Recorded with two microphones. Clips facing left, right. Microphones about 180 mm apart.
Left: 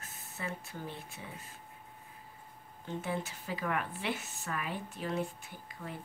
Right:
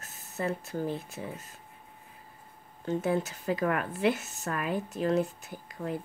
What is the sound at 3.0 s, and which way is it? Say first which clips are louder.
A woman's voice: right 8 dB; 45° right (ahead or behind).